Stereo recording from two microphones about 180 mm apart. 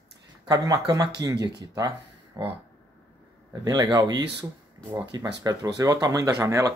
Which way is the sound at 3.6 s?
20° right (ahead or behind).